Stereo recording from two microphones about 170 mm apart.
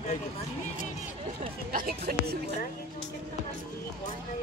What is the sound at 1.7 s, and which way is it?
Speech, 60° right (ahead or behind).